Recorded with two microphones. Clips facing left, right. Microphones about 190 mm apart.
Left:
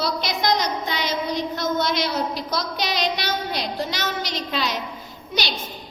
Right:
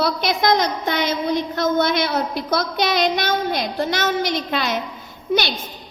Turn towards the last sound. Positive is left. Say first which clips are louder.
# right 8 dB
turn(degrees=-55)  # may be behind; listen again after turning